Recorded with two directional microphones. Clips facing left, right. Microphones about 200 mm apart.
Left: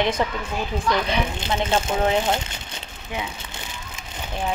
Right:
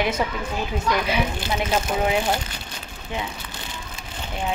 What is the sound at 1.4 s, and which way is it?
Speech, 25° left (ahead or behind).